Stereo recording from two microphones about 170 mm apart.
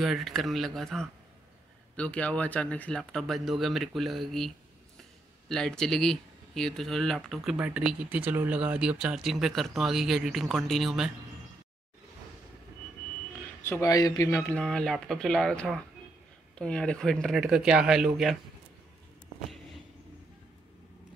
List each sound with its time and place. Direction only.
0.0 s speech: centre (ahead or behind)
5.5 s speech: 5° left (ahead or behind)
13.6 s speech: 15° left (ahead or behind)
14.6 s speech: 5° left (ahead or behind)